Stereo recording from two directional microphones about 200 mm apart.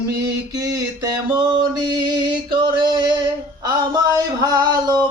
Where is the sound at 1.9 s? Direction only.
20° right (ahead or behind).